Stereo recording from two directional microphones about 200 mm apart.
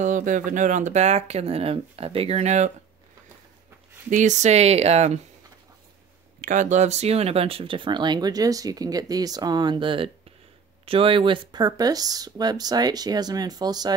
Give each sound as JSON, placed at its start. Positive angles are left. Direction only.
{"t": 0.0, "sound": "speech", "side_deg": -40}
{"t": 4.1, "sound": "speech", "side_deg": -35}
{"t": 6.4, "sound": "speech", "side_deg": -40}